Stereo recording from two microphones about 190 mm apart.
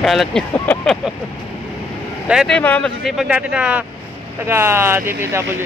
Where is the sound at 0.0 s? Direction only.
Centre (ahead or behind).